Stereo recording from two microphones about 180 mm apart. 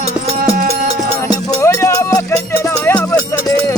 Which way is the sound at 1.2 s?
15° left (ahead or behind).